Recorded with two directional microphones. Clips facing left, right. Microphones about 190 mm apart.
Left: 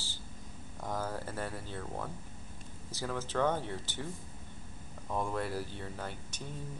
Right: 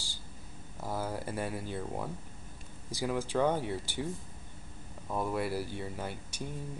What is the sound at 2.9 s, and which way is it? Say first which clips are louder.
Speech: right 5 dB; 10° right (ahead or behind).